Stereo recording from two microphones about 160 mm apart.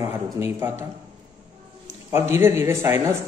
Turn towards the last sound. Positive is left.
turn(degrees=-15)  # may be behind; listen again after turning